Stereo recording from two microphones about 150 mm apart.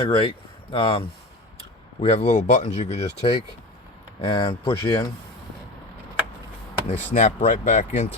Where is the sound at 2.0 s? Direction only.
45° left (ahead or behind).